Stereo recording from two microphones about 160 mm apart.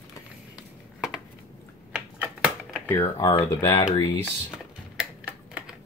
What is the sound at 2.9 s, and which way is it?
Speech, 15° left (ahead or behind).